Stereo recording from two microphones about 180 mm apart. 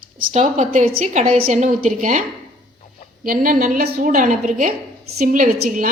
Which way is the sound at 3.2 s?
50° right (ahead or behind).